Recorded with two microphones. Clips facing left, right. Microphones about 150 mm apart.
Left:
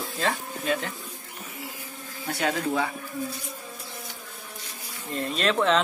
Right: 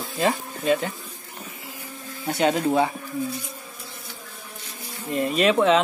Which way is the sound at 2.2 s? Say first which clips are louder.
Right 6 dB; 25° right (ahead or behind).